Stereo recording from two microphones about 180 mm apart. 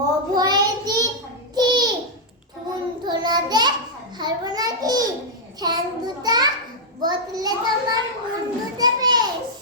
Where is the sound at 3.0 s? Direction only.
25° right (ahead or behind).